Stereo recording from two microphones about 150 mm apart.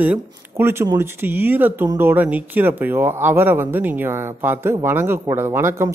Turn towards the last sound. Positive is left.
turn(degrees=-15)  # may be behind; listen again after turning